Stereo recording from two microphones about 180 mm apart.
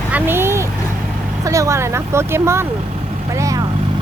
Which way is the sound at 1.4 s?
15° right (ahead or behind).